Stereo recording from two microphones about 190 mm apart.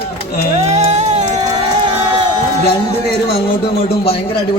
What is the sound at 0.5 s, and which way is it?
Speech, 35° right (ahead or behind).